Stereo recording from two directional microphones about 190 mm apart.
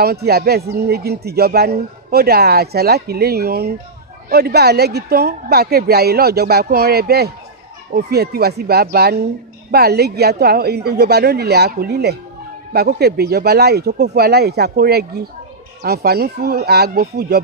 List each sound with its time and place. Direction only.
0.0 s speech: 55° right (ahead or behind)